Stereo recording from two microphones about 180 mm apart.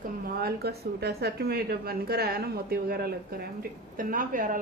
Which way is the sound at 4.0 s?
50° right (ahead or behind).